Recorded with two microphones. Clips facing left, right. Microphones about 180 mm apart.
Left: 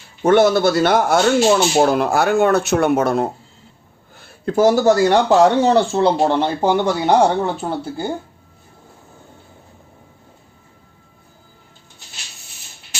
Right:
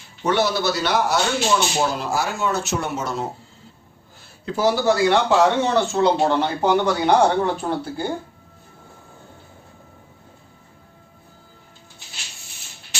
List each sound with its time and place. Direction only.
0.2 s speech: 50° left (ahead or behind); by 8.0 s 25° left (ahead or behind)